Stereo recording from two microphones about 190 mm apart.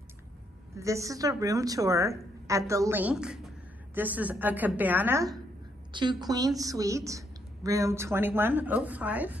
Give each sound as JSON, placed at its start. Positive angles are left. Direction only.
{"t": 0.7, "sound": "a woman's voice", "side_deg": -15}
{"t": 5.9, "sound": "a woman's voice", "side_deg": -25}